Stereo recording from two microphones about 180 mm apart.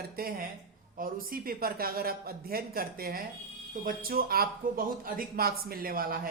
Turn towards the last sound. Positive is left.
turn(degrees=-55)  # may be behind; listen again after turning